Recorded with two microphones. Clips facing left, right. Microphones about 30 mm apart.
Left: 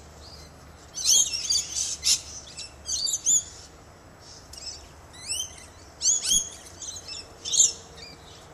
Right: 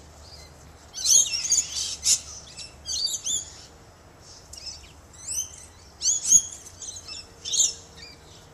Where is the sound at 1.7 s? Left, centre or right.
Right.